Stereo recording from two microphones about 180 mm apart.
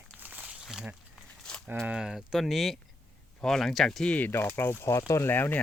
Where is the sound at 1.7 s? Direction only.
10° right (ahead or behind); by 5.6 s 10° left (ahead or behind).